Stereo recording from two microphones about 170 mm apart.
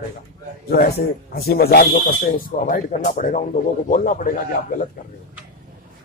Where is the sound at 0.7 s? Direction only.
65° left (ahead or behind).